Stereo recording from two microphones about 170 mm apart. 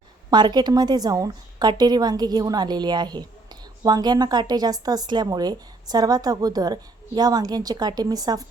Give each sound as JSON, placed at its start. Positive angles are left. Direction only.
{"t": 0.3, "sound": "speech", "side_deg": -25}